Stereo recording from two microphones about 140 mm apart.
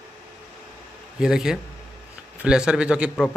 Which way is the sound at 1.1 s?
5° right (ahead or behind).